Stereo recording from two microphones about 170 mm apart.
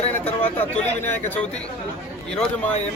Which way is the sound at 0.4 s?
10° left (ahead or behind).